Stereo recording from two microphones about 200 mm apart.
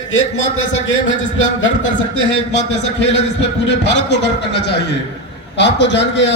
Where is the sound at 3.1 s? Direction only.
65° left (ahead or behind).